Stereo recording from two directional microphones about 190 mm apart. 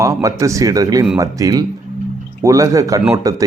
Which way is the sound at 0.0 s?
15° right (ahead or behind).